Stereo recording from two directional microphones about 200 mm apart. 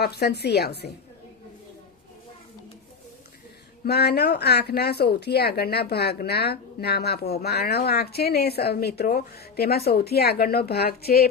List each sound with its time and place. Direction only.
0.0 s a woman's voice: 55° left (ahead or behind)
3.8 s speech: 55° left (ahead or behind)